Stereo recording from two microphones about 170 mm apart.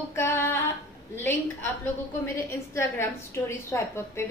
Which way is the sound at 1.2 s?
15° left (ahead or behind).